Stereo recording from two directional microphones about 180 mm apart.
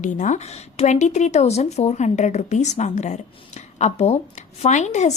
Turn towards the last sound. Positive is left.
turn(degrees=40)  # may be behind; listen again after turning